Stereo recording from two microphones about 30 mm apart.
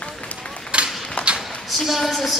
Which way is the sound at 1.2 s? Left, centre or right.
Left.